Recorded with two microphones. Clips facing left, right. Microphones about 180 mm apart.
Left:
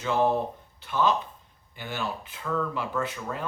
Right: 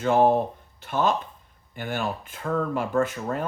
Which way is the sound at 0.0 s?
50° right (ahead or behind).